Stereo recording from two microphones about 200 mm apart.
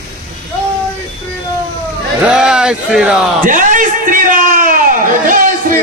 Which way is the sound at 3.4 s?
40° right (ahead or behind).